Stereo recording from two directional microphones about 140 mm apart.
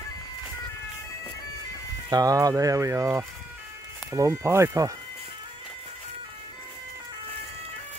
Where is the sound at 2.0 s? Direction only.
25° right (ahead or behind).